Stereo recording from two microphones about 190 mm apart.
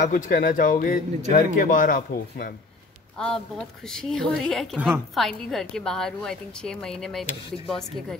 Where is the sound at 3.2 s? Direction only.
5° left (ahead or behind).